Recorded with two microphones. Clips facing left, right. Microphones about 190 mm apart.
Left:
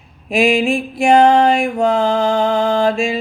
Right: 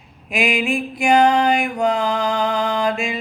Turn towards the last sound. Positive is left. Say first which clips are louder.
# left 6 dB
turn(degrees=30)  # may be behind; listen again after turning